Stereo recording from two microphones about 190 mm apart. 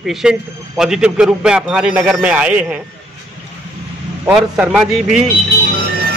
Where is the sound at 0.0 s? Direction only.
Centre (ahead or behind).